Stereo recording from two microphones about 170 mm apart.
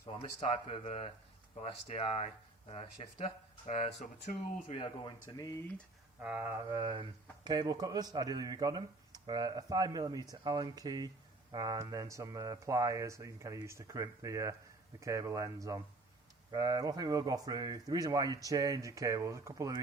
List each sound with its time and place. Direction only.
0.1 s speech: 30° left (ahead or behind)
4.8 s speech: 30° left (ahead or behind)
6.1 s speech: 10° right (ahead or behind)